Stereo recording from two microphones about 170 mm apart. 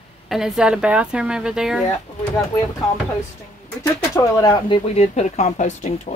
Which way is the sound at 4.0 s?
15° left (ahead or behind).